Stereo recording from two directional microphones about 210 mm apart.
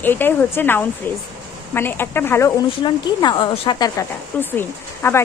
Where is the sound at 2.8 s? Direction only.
20° left (ahead or behind).